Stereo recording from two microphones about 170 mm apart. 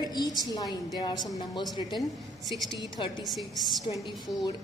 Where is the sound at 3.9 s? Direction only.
35° left (ahead or behind).